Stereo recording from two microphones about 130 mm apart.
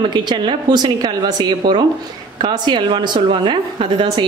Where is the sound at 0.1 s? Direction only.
35° right (ahead or behind).